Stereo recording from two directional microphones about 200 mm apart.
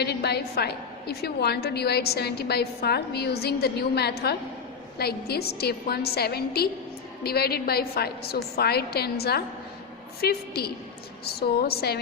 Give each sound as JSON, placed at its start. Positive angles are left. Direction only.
{"t": 0.0, "sound": "a woman's voice", "side_deg": 55}